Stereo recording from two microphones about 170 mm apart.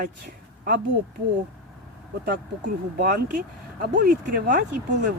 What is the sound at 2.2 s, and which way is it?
Speech, 60° right (ahead or behind).